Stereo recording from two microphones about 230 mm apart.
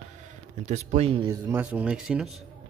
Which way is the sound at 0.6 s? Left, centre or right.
Right.